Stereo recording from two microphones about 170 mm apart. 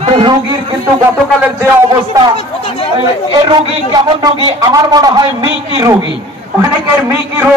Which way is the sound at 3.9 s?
25° right (ahead or behind).